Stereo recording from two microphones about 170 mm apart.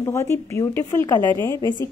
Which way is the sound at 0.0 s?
20° left (ahead or behind).